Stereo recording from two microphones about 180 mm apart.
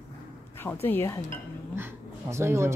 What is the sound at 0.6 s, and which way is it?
Speech, 10° left (ahead or behind).